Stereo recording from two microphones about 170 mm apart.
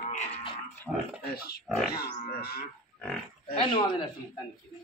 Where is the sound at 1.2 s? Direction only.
65° left (ahead or behind).